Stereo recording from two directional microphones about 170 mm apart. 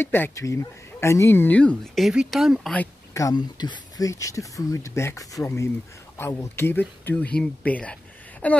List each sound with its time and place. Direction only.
0.0 s speech: 15° left (ahead or behind)
2.7 s speech: 10° left (ahead or behind)
3.3 s speech: 25° left (ahead or behind); by 8.5 s 5° left (ahead or behind)